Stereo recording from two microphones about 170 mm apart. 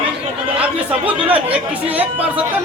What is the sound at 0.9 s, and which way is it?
Speech, 10° right (ahead or behind).